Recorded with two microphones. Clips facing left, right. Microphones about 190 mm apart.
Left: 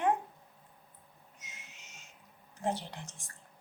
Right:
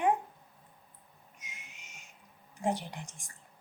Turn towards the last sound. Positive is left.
turn(degrees=-15)  # may be behind; listen again after turning